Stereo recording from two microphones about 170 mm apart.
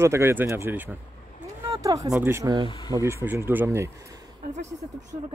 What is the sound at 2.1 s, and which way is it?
Speech, 10° right (ahead or behind).